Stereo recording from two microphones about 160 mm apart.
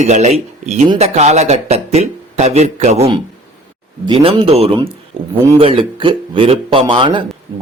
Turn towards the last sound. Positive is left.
turn(degrees=-30)  # may be behind; listen again after turning